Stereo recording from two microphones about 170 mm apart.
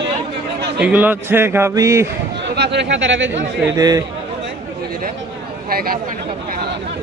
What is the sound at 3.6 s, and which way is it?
Speech, 20° right (ahead or behind).